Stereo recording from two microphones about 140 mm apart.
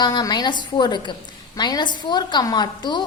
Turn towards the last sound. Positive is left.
turn(degrees=30)  # may be behind; listen again after turning